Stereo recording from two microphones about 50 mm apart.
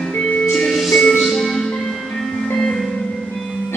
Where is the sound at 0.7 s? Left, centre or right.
Centre.